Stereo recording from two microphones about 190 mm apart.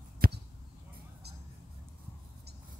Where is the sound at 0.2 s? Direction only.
50° right (ahead or behind).